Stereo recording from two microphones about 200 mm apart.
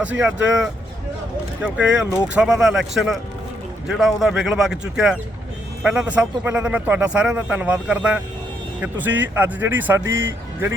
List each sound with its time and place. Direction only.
0.0 s a man's voice: 5° right (ahead or behind)
9.3 s a man's voice: 10° right (ahead or behind)
10.0 s speech: 70° right (ahead or behind)